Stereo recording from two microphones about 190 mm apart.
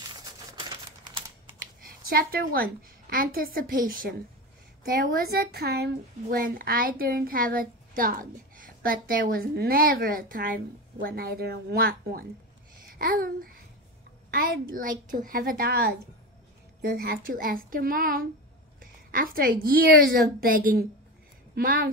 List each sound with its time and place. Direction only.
0.6 s a sound: 25° right (ahead or behind)
2.0 s speech: 50° right (ahead or behind)
12.8 s babbling: 50° right (ahead or behind)
14.3 s speech: 50° right (ahead or behind)
17.0 s speech: 50° right (ahead or behind)